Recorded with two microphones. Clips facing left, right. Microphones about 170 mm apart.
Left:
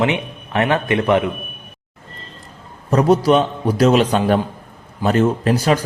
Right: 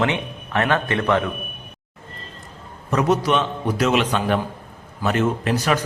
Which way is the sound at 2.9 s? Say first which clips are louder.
Left 5 dB; 35° left (ahead or behind).